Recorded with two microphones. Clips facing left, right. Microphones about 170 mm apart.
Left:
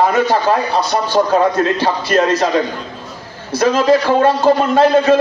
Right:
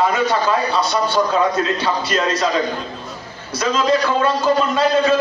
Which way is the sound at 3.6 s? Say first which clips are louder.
Left 5 dB; 55° left (ahead or behind).